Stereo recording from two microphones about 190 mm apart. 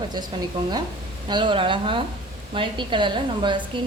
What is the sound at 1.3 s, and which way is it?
A woman's voice, 25° right (ahead or behind).